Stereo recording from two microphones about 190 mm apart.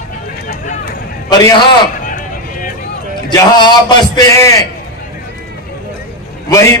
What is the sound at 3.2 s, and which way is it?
A man's voice, 25° left (ahead or behind).